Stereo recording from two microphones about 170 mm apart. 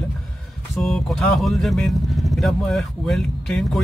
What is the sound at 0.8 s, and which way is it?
Speech, centre (ahead or behind).